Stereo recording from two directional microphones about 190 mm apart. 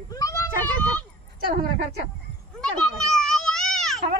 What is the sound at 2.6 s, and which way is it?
Children playing, centre (ahead or behind).